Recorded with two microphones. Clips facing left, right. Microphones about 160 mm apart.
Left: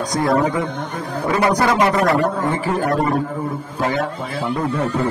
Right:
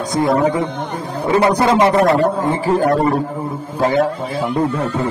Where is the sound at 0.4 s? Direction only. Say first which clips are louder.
Right 3 dB; 30° right (ahead or behind).